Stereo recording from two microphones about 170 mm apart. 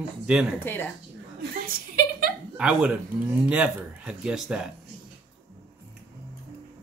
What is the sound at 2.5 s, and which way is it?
Speech, 5° right (ahead or behind).